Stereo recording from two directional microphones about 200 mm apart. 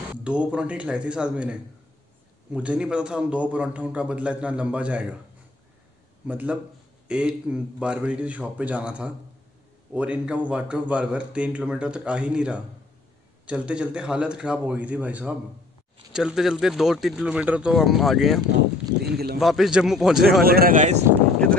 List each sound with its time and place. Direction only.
0.1 s a man's voice: 5° right (ahead or behind)
6.2 s a man's voice: 5° right (ahead or behind)
19.0 s a sound: 50° right (ahead or behind)
19.4 s speech: centre (ahead or behind)
20.4 s speech: 45° right (ahead or behind)